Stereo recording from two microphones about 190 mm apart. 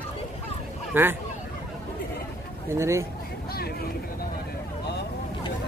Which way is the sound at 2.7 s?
15° right (ahead or behind).